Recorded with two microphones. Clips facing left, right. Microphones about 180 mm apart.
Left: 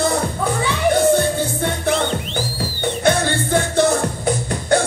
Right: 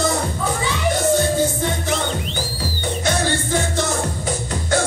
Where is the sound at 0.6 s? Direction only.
60° left (ahead or behind).